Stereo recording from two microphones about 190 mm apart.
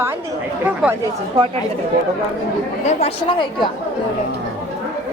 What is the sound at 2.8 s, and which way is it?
Speech, 30° left (ahead or behind).